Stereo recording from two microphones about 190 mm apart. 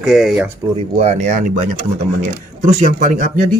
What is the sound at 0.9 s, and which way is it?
Speech, 35° right (ahead or behind).